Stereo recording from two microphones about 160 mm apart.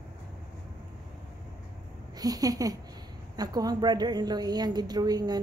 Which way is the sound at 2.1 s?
25° right (ahead or behind).